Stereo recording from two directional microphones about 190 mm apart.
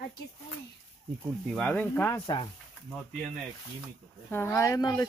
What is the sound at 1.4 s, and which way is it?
Speech, 5° left (ahead or behind).